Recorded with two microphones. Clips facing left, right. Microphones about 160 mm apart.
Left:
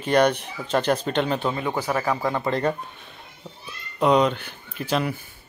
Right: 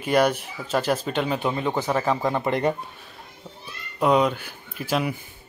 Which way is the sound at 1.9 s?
15° right (ahead or behind).